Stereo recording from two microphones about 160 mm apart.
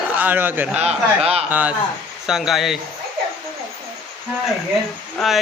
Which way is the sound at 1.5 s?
10° right (ahead or behind).